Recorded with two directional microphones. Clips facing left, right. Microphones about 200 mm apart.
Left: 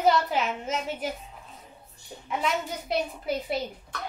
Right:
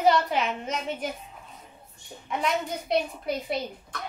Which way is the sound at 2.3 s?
Centre (ahead or behind).